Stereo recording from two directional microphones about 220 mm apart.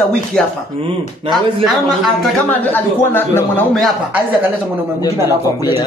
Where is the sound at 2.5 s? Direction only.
10° left (ahead or behind).